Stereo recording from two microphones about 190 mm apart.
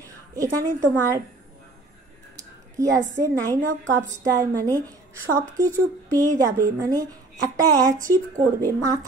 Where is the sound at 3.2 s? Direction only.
20° right (ahead or behind).